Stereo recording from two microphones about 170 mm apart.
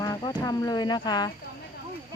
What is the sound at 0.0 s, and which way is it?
Speech, 20° left (ahead or behind).